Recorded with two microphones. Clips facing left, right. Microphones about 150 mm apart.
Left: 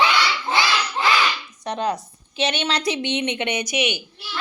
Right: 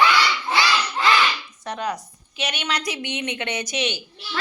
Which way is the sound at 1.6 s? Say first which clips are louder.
Left 4 dB; 25° left (ahead or behind).